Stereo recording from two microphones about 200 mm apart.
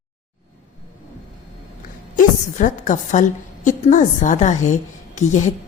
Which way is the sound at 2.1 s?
40° left (ahead or behind).